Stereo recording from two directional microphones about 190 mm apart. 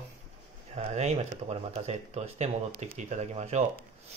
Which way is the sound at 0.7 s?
35° right (ahead or behind).